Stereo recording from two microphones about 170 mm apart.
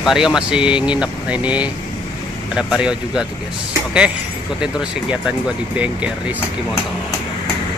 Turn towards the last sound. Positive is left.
turn(degrees=-10)  # may be behind; listen again after turning